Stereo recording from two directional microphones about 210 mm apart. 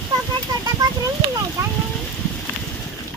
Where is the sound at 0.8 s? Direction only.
20° right (ahead or behind).